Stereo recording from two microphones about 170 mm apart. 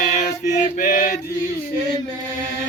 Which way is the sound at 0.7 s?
55° left (ahead or behind).